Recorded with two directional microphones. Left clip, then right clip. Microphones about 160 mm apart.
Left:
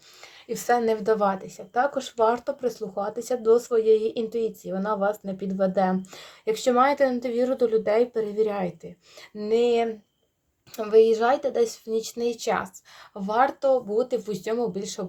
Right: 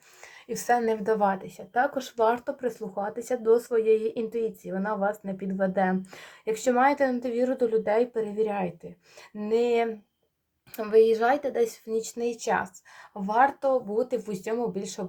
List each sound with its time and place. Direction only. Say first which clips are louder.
0.5 s speech: left 2 dB; 25° left (ahead or behind)
2.8 s speech: left 3 dB; 20° left (ahead or behind)
12.1 s speech: left 1 dB; 45° left (ahead or behind)
14.5 s speech: left 2 dB; 25° left (ahead or behind)
14.8 s speech: left 2 dB; 40° left (ahead or behind)